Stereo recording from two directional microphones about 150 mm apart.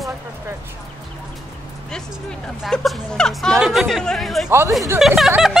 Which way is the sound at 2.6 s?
Centre (ahead or behind).